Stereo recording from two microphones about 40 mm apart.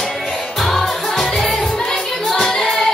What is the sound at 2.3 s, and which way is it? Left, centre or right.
Music, centre.